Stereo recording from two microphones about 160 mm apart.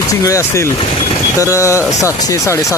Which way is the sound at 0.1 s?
20° left (ahead or behind).